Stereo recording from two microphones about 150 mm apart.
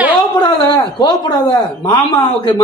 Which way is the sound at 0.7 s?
30° left (ahead or behind).